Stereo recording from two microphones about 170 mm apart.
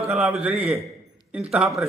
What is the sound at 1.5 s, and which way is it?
Speech, 5° right (ahead or behind).